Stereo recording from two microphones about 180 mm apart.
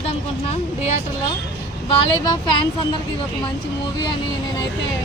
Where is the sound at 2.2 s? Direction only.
25° left (ahead or behind).